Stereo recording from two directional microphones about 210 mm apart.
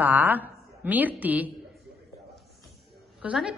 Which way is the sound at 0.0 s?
10° right (ahead or behind).